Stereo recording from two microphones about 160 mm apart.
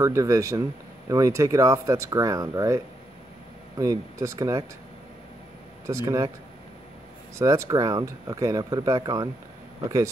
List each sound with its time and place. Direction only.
0.0 s speech: 20° right (ahead or behind)
5.9 s speech: 20° right (ahead or behind)
7.3 s speech: 20° right (ahead or behind)